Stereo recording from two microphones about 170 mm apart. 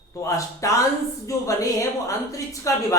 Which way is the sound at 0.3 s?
20° left (ahead or behind).